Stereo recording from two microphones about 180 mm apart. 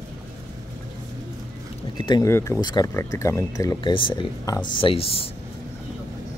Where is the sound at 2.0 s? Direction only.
25° left (ahead or behind).